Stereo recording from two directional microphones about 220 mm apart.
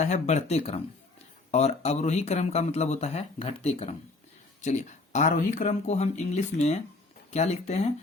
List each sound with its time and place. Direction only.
0.0 s speech: 30° left (ahead or behind)